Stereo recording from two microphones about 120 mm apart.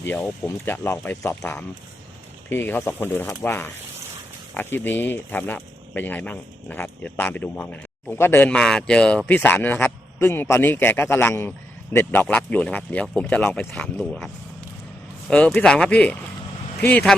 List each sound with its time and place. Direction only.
0.0 s speech: 20° left (ahead or behind)
8.4 s speech: 5° left (ahead or behind)
13.7 s speech: 5° left (ahead or behind)
15.3 s speech: 10° left (ahead or behind)